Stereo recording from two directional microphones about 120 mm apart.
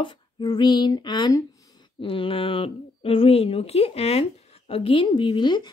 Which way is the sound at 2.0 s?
50° left (ahead or behind).